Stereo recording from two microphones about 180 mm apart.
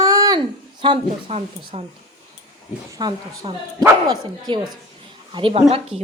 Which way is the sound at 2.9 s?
25° right (ahead or behind).